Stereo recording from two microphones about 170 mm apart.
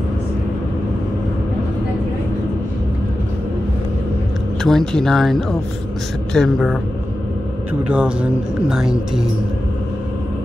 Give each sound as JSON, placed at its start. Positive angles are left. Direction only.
{"t": 4.6, "sound": "speech", "side_deg": 0}
{"t": 7.9, "sound": "speech", "side_deg": -5}